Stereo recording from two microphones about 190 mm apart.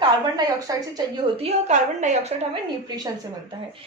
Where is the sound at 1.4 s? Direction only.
40° right (ahead or behind).